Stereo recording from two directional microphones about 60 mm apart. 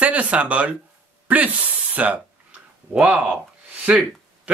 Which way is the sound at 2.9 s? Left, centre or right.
Right.